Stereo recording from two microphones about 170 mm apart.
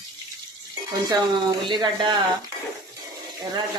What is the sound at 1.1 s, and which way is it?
Speech, 25° right (ahead or behind).